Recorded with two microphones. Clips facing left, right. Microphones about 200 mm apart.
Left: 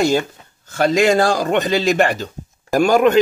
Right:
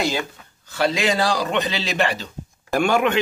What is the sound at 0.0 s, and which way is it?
Speech, 45° left (ahead or behind).